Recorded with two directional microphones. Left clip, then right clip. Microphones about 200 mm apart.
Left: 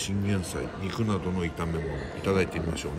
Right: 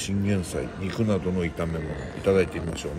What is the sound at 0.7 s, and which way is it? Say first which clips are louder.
A man's voice: right 5 dB; 10° left (ahead or behind).